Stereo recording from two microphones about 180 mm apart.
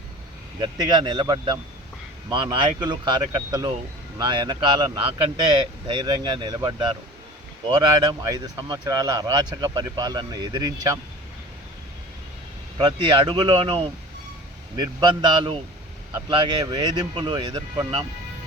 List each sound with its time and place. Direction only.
0.6 s speech: 25° right (ahead or behind)
12.8 s speech: 25° right (ahead or behind)